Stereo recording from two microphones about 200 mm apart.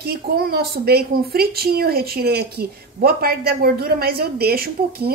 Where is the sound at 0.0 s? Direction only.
50° right (ahead or behind).